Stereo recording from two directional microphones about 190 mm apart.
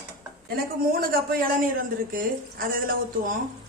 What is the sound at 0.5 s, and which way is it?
Speech, 55° right (ahead or behind).